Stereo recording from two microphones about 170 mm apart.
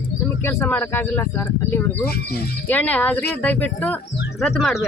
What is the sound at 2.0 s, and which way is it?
Speech, 65° left (ahead or behind).